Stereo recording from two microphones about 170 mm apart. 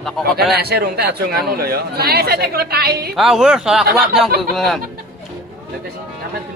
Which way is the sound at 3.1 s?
Centre (ahead or behind).